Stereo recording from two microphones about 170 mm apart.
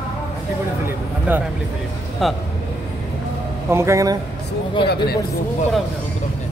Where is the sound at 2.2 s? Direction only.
Centre (ahead or behind).